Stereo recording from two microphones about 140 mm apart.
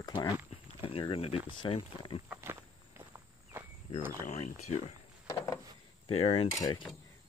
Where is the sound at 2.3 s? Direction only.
15° right (ahead or behind).